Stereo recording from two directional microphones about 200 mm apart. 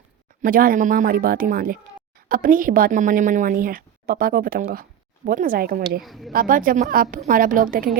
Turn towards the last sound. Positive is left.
turn(degrees=-45)  # may be behind; listen again after turning